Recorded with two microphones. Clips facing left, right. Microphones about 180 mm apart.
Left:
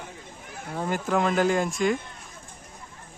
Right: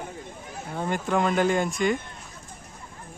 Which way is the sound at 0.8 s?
Centre (ahead or behind).